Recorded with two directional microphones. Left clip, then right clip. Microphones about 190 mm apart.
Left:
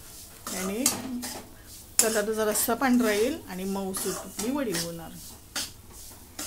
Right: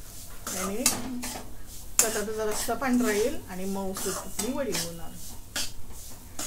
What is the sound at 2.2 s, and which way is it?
Speech, 55° left (ahead or behind).